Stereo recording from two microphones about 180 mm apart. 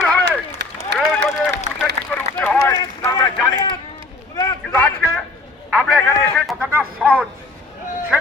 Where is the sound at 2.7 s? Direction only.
20° left (ahead or behind).